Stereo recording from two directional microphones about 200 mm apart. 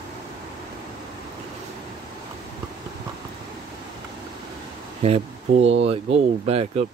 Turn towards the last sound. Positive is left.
turn(degrees=-30)  # may be behind; listen again after turning